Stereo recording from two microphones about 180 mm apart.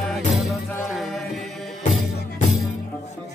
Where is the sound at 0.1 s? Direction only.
Centre (ahead or behind).